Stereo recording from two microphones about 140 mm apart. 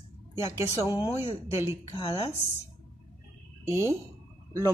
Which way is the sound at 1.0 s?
15° right (ahead or behind).